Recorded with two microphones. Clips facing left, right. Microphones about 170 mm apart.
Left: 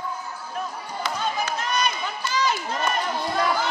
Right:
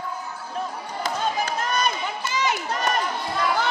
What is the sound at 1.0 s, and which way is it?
Basketball bounce, 45° right (ahead or behind).